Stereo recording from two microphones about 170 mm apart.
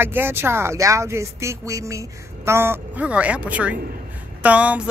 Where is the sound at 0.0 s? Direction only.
15° right (ahead or behind).